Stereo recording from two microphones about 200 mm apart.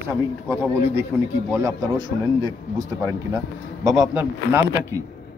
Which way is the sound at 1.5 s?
15° right (ahead or behind).